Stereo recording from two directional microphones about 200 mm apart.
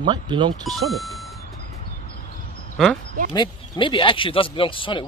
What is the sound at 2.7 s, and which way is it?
Speech, centre (ahead or behind).